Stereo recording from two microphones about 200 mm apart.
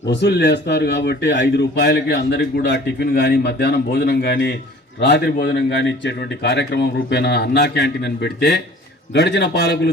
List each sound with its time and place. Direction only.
0.1 s a man's voice: 60° left (ahead or behind)